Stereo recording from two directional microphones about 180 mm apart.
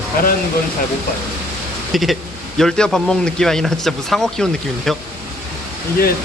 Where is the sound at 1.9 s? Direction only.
Centre (ahead or behind).